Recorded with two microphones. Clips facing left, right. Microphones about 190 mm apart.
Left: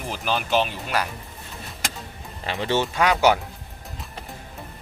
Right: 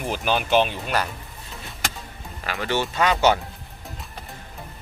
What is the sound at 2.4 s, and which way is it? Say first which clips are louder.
Speech: left 2 dB; 25° left (ahead or behind).